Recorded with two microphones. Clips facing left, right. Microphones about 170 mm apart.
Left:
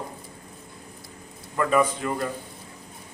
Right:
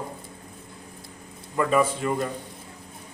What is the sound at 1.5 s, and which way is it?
Speech, 5° right (ahead or behind).